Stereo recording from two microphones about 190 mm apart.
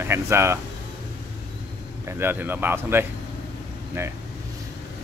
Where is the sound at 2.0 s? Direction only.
10° right (ahead or behind).